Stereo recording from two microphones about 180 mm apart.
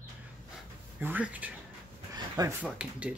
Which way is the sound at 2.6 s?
5° right (ahead or behind).